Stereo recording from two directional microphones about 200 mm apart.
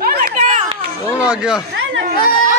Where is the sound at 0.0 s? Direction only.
35° right (ahead or behind).